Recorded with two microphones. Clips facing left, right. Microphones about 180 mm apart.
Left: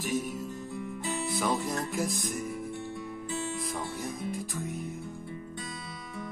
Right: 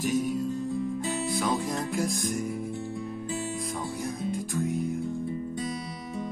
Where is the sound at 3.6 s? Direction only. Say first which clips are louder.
Right 2 dB; centre (ahead or behind).